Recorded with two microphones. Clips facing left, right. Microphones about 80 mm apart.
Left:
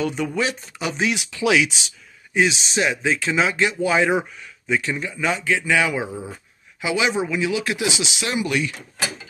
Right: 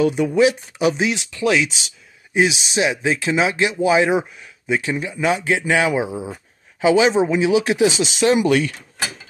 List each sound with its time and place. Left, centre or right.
0.0 s speech: centre
1.3 s speech: centre
2.3 s speech: centre
6.8 s speech: right
7.9 s speech: right